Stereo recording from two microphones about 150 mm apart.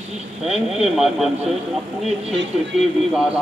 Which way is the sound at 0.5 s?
Centre (ahead or behind).